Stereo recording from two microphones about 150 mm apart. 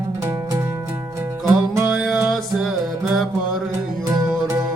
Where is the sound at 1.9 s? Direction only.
5° right (ahead or behind).